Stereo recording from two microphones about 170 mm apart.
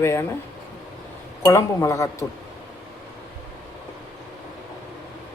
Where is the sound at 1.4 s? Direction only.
15° left (ahead or behind).